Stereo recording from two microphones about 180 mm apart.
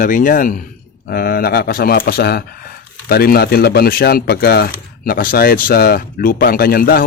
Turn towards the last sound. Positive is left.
turn(degrees=55)  # may be behind; listen again after turning